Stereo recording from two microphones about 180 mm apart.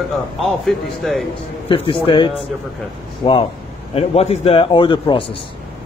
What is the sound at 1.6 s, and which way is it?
A man's voice, 30° left (ahead or behind).